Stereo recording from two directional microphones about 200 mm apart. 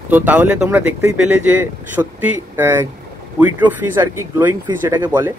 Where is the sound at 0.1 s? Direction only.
10° right (ahead or behind).